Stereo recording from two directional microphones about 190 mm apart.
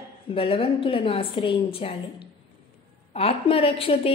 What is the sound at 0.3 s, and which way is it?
A woman's voice, 30° left (ahead or behind).